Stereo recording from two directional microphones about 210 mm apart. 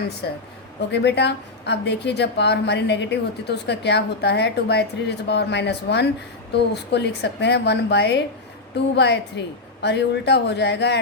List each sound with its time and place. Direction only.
0.2 s a woman's voice: 55° left (ahead or behind)